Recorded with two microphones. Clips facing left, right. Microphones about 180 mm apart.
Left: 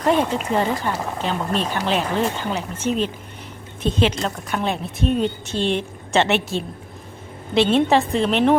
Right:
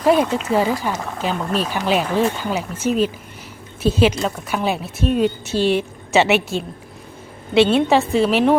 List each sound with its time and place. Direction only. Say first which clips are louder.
0.0 s a woman's voice: right 3 dB; 10° right (ahead or behind)